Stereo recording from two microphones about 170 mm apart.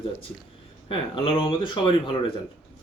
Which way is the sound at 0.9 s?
30° left (ahead or behind).